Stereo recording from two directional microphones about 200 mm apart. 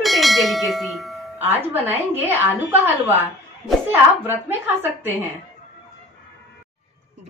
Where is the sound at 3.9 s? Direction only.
10° right (ahead or behind).